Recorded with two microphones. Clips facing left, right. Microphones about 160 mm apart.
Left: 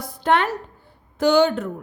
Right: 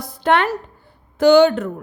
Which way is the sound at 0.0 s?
75° right (ahead or behind).